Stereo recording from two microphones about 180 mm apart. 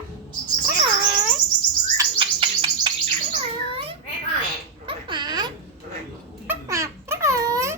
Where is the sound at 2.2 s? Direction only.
30° right (ahead or behind).